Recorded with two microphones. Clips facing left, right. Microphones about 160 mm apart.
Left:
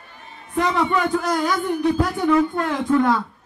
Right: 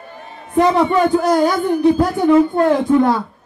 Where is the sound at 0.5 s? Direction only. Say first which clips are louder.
Right 7 dB; 35° right (ahead or behind).